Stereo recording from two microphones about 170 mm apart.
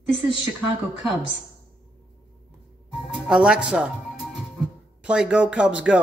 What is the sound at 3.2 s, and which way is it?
Speech, 5° right (ahead or behind).